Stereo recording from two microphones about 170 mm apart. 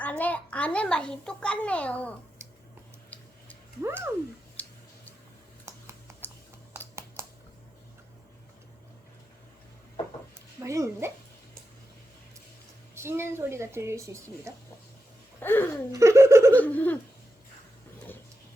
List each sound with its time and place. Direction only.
0.0 s a child's voice: 10° left (ahead or behind)
2.4 s a sound: 15° right (ahead or behind)
3.8 s a woman's voice: 15° right (ahead or behind)
4.6 s tick-tock: 10° left (ahead or behind)
5.6 s computer keyboard: 15° right (ahead or behind)
10.6 s a woman's voice: 15° right (ahead or behind)
12.9 s a woman's voice: 15° right (ahead or behind)
15.4 s a child's voice: 10° left (ahead or behind)
15.9 s a woman's voice: 15° right (ahead or behind)
16.5 s a child's voice: 10° left (ahead or behind)